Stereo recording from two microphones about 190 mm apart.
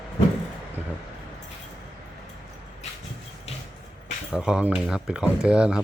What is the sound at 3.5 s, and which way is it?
Vehicle, 35° left (ahead or behind).